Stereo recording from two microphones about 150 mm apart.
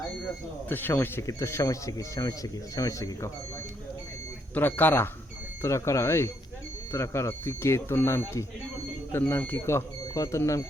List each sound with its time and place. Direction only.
0.7 s speech: 15° left (ahead or behind)
4.5 s speech: 10° left (ahead or behind)